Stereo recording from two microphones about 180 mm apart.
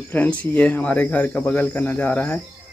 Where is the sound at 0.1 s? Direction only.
10° left (ahead or behind).